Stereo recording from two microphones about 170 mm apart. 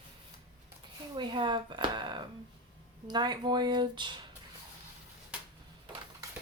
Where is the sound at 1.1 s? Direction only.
30° right (ahead or behind).